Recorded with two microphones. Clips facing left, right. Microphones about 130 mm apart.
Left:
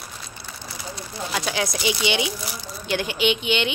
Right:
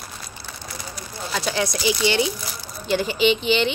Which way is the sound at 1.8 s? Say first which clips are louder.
Right 4 dB; 15° left (ahead or behind).